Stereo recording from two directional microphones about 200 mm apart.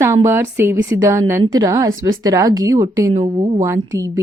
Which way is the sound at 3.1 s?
30° right (ahead or behind).